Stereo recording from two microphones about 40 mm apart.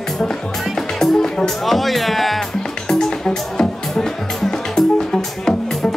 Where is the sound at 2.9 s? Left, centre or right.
Centre.